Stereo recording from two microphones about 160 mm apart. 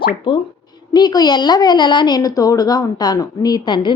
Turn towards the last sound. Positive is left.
turn(degrees=30)  # may be behind; listen again after turning